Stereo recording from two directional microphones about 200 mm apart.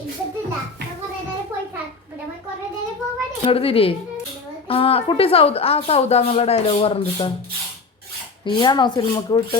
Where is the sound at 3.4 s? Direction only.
30° left (ahead or behind).